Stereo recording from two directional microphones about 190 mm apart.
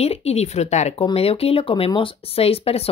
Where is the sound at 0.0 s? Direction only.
35° left (ahead or behind).